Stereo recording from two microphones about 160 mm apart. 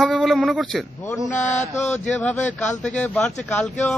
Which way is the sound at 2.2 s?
10° left (ahead or behind).